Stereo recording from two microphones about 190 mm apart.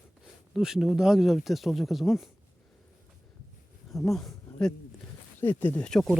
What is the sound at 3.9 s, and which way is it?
Speech, centre (ahead or behind).